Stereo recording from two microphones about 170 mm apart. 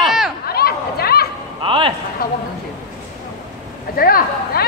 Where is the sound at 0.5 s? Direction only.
65° left (ahead or behind).